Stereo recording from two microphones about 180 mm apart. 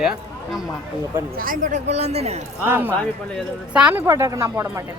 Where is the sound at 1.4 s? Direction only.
50° right (ahead or behind).